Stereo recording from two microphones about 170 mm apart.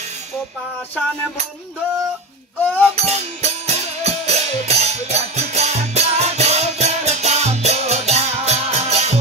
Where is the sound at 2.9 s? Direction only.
40° right (ahead or behind).